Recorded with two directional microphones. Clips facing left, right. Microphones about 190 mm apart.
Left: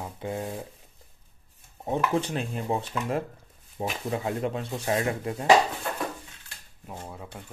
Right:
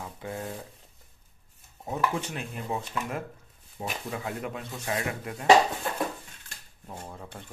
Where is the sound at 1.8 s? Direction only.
30° left (ahead or behind).